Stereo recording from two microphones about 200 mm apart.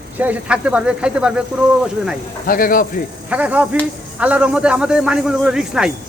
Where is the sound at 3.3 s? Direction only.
5° right (ahead or behind).